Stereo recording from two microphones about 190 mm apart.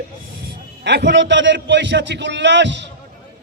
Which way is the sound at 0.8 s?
65° right (ahead or behind).